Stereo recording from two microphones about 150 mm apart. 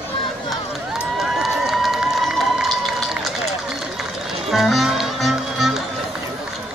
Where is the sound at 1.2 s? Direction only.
Centre (ahead or behind).